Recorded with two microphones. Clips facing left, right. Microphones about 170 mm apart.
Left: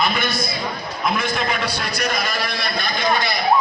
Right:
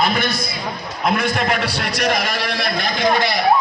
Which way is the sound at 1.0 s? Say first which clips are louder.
Right 3 dB; 60° right (ahead or behind).